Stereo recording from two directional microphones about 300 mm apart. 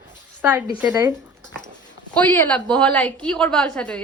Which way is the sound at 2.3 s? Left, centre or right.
Centre.